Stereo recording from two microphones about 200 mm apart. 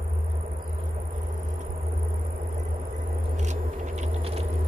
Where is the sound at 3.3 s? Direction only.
35° right (ahead or behind).